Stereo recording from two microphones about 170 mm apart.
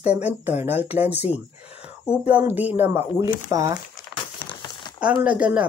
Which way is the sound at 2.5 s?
10° right (ahead or behind).